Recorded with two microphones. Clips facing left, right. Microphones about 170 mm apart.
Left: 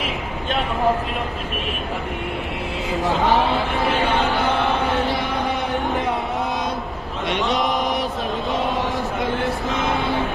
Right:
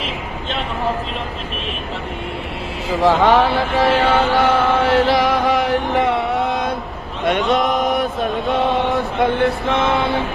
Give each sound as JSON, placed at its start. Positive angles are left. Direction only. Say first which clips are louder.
{"t": 3.0, "sound": "mantra", "louder": "right 6 dB", "side_deg": -90}
{"t": 7.3, "sound": "a sound", "louder": "right 6 dB", "side_deg": -55}
{"t": 7.6, "sound": "chant", "louder": "right 3 dB", "side_deg": 0}
{"t": 7.9, "sound": "chant", "louder": "right 4 dB", "side_deg": -55}